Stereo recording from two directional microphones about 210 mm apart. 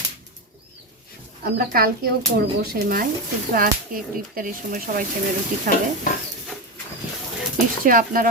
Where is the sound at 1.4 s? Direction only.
45° right (ahead or behind).